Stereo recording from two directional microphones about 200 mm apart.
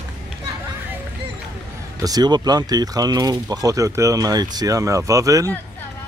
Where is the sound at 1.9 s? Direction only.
20° right (ahead or behind).